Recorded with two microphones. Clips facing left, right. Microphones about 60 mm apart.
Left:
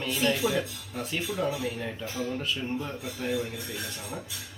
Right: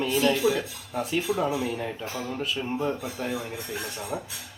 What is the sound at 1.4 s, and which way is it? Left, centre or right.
Speech, right.